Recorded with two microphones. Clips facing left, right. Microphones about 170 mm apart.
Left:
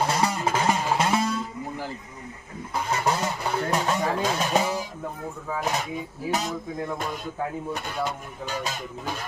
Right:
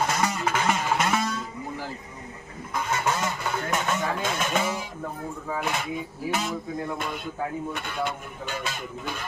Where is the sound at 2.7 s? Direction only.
35° left (ahead or behind).